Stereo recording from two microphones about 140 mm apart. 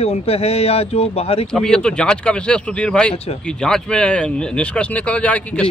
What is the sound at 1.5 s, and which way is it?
Speech, 5° left (ahead or behind).